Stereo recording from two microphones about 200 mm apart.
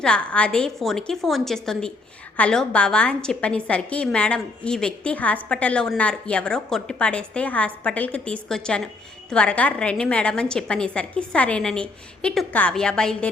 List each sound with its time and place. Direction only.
0.0 s a woman's voice: 5° left (ahead or behind)